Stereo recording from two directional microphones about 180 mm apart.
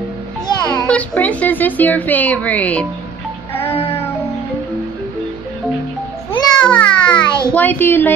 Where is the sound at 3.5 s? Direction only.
10° left (ahead or behind).